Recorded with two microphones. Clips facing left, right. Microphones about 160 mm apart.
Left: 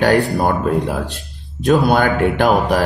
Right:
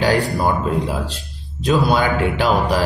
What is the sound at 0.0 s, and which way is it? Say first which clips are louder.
Speech: left 3 dB; 55° left (ahead or behind).